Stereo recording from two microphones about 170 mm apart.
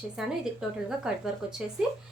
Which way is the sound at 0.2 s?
5° right (ahead or behind).